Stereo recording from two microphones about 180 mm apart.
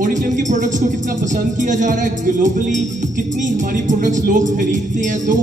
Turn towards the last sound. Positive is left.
turn(degrees=-45)  # may be behind; listen again after turning